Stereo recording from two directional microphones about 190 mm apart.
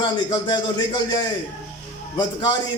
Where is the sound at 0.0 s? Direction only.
25° left (ahead or behind).